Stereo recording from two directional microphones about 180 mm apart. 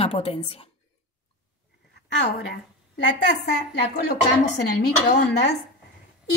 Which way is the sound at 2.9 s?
75° left (ahead or behind).